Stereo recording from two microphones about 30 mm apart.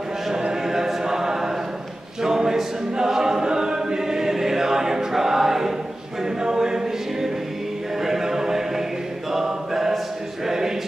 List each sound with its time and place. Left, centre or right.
0.5 s choir: centre
2.2 s a capella: centre
6.4 s choir: right
8.0 s music: centre
9.3 s choir: centre
10.4 s chant: centre